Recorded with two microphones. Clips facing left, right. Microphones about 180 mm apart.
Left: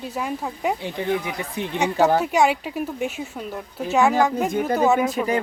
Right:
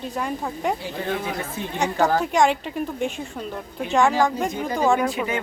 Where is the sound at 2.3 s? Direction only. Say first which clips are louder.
Even; 5° left (ahead or behind).